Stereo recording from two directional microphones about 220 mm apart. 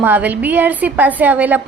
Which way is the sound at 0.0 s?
10° right (ahead or behind).